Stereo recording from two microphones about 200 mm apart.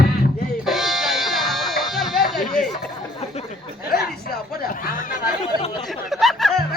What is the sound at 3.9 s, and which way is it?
Chuckle, 50° left (ahead or behind).